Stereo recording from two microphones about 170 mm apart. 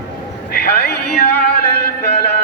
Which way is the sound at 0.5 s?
70° left (ahead or behind).